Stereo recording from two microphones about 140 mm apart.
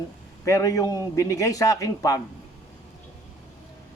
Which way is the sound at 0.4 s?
20° left (ahead or behind).